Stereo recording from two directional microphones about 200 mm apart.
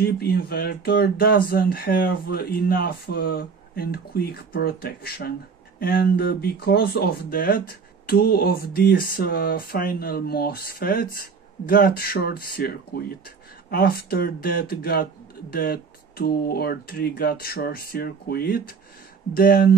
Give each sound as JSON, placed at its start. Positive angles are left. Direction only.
{"t": 0.0, "sound": "speech", "side_deg": 50}